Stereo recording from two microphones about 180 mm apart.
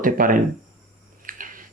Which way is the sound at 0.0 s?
50° right (ahead or behind).